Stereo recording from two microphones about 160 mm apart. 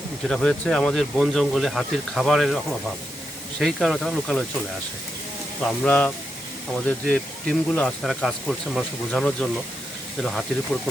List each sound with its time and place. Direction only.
0.3 s speech: 5° left (ahead or behind)
5.8 s speech: 5° left (ahead or behind)